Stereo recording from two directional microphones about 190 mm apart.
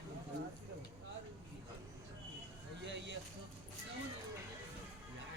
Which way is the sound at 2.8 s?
65° right (ahead or behind).